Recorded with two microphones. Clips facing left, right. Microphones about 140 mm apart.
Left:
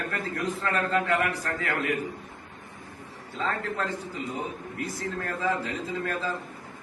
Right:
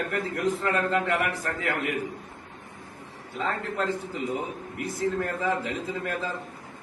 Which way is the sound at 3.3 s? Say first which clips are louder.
Right 1 dB; 20° right (ahead or behind).